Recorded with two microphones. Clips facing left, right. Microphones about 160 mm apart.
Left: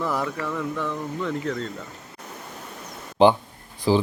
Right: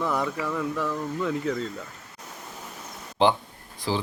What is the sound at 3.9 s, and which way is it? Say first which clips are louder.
Speech: left 8 dB; 15° left (ahead or behind).